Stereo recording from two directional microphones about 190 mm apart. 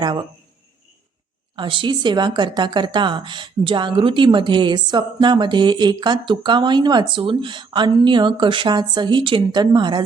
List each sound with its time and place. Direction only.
0.0 s speech: 20° right (ahead or behind)
1.5 s speech: 25° right (ahead or behind)